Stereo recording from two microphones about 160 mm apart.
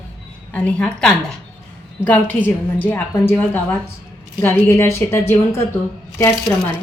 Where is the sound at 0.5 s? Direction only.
5° left (ahead or behind).